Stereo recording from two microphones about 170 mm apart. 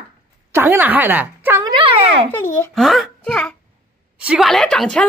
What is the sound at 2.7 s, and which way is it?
Speech, centre (ahead or behind).